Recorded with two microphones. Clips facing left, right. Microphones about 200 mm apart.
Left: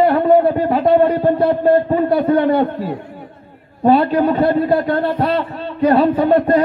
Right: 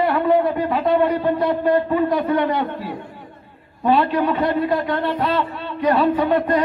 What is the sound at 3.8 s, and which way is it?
Speech, 40° left (ahead or behind).